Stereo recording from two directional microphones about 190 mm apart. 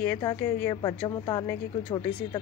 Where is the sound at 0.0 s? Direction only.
10° left (ahead or behind).